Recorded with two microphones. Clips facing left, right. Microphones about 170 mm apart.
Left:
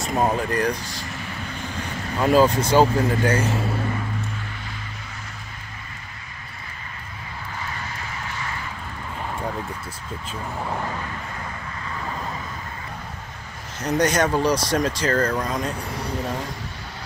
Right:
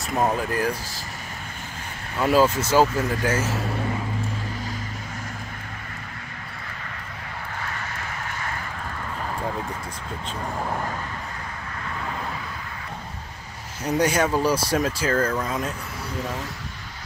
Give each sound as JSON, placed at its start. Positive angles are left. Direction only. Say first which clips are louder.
{"t": 0.0, "sound": "speech", "louder": "left 1 dB", "side_deg": 0}
{"t": 2.1, "sound": "speech", "louder": "left 2 dB", "side_deg": -5}
{"t": 13.8, "sound": "speech", "louder": "left 1 dB", "side_deg": -10}